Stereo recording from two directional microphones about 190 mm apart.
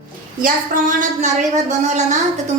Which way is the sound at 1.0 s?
40° right (ahead or behind).